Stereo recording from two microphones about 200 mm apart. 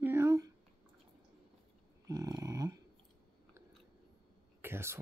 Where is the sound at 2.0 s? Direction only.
15° right (ahead or behind).